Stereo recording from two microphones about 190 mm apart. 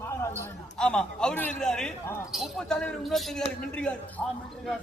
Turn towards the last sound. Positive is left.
turn(degrees=5)  # may be behind; listen again after turning